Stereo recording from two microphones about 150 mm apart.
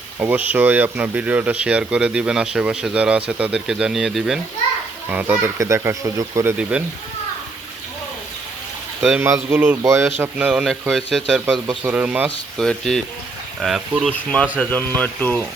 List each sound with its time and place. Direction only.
0.2 s speech: 10° right (ahead or behind)
5.1 s speech: 15° right (ahead or behind)
6.6 s speech: 10° right (ahead or behind)
9.0 s speech: 5° right (ahead or behind)
9.2 s a man's voice: 15° right (ahead or behind)
12.5 s a man's voice: centre (ahead or behind)
14.1 s speech: 5° left (ahead or behind)